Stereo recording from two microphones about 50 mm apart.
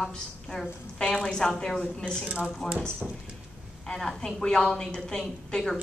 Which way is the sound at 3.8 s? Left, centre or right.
Centre.